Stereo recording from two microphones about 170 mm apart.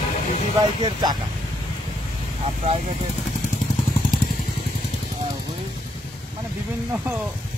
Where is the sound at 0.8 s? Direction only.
25° right (ahead or behind).